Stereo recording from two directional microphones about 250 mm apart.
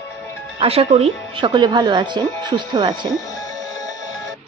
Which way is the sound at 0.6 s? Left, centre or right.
Right.